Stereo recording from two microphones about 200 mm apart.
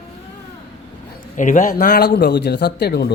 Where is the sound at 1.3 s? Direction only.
40° left (ahead or behind).